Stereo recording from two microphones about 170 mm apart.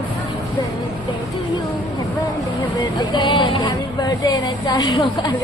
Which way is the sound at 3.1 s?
30° left (ahead or behind).